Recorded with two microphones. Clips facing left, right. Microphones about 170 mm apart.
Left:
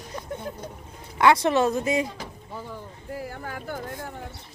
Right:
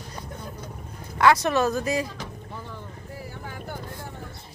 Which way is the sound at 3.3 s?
50° left (ahead or behind).